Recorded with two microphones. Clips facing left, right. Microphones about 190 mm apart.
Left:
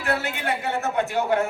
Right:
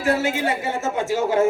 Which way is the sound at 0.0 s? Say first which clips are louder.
Right 6 dB; 60° left (ahead or behind).